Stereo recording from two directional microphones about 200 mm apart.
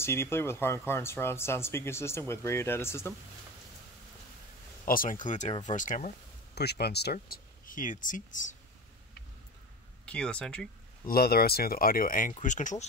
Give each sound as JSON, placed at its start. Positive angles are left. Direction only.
{"t": 0.0, "sound": "speech", "side_deg": 10}
{"t": 4.8, "sound": "speech", "side_deg": 45}
{"t": 6.5, "sound": "speech", "side_deg": 55}
{"t": 10.0, "sound": "speech", "side_deg": 5}
{"t": 11.1, "sound": "speech", "side_deg": 50}